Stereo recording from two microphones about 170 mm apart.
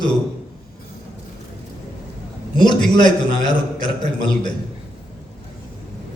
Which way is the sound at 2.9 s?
25° left (ahead or behind).